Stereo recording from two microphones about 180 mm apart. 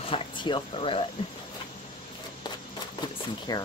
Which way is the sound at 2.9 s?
25° left (ahead or behind).